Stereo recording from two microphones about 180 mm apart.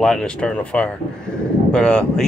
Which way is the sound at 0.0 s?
5° left (ahead or behind).